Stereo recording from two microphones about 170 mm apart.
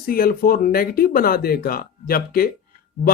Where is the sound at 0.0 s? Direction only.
60° left (ahead or behind).